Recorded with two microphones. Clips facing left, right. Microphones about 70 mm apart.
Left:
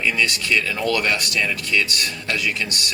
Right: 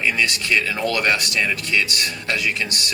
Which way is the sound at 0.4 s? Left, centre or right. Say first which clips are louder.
Even; right.